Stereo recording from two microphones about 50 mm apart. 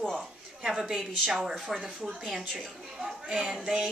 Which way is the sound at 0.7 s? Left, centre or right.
Centre.